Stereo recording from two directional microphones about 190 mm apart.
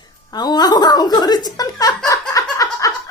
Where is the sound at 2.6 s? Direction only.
15° left (ahead or behind).